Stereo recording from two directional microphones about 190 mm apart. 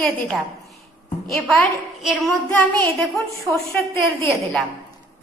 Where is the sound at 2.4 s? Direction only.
10° left (ahead or behind).